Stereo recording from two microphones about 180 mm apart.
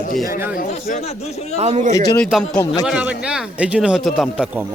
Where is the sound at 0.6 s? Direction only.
50° left (ahead or behind).